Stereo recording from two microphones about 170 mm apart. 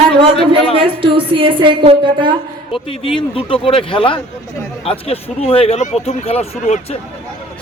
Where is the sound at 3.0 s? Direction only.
30° left (ahead or behind).